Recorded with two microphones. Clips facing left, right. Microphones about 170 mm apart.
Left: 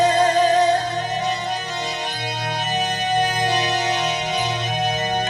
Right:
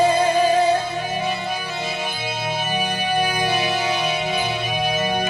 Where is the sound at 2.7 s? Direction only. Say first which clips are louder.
Left 2 dB; 10° right (ahead or behind).